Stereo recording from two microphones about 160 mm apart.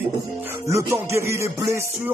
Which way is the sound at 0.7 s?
20° right (ahead or behind).